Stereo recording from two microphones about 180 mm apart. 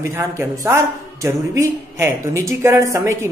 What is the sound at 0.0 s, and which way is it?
A man's voice, 15° right (ahead or behind).